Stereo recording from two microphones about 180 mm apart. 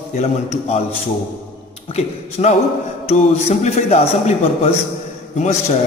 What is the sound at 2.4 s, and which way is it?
A man's voice, 35° left (ahead or behind).